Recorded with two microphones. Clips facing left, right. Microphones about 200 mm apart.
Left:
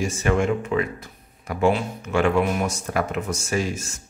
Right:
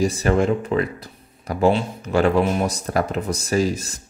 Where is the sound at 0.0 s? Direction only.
35° right (ahead or behind).